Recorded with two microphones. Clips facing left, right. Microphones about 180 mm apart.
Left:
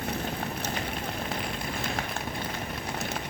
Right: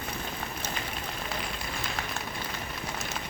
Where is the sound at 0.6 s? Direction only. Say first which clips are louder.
Left 4 dB; 55° left (ahead or behind).